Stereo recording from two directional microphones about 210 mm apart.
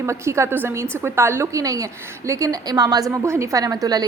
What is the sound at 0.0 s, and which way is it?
A woman's voice, 15° right (ahead or behind).